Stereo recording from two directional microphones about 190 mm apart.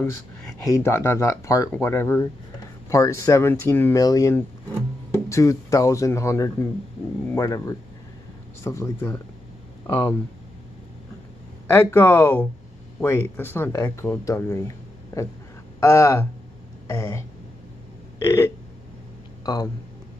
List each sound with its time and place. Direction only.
0.7 s speech: 15° left (ahead or behind)
11.6 s speech: 10° left (ahead or behind)
15.8 s speech: 15° left (ahead or behind)
16.8 s throat clearing: 15° left (ahead or behind)
18.2 s burping: 15° left (ahead or behind)
19.4 s speech: 20° left (ahead or behind)